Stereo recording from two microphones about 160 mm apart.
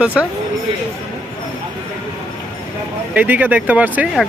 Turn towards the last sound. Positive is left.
turn(degrees=-10)  # may be behind; listen again after turning